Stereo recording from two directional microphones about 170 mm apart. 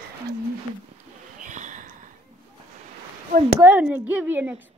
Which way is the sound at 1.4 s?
45° right (ahead or behind).